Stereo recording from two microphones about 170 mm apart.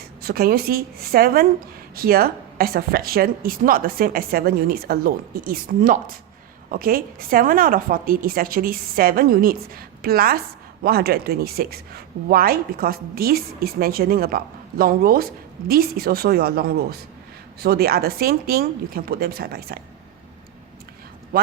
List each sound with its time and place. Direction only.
0.2 s speech: 60° right (ahead or behind)